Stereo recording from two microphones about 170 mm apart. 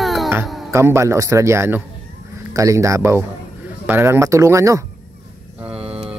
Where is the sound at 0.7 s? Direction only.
15° right (ahead or behind).